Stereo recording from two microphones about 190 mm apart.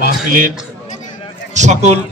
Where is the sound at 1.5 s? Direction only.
40° right (ahead or behind).